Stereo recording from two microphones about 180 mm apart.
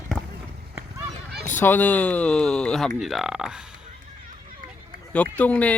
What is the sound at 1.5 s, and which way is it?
Speech, 10° left (ahead or behind).